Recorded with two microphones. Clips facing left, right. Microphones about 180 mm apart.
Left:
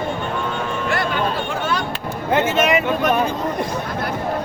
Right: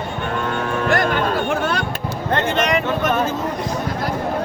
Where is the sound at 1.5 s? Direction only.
65° right (ahead or behind).